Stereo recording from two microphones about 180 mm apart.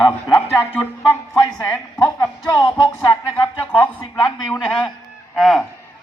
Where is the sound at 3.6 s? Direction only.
10° left (ahead or behind).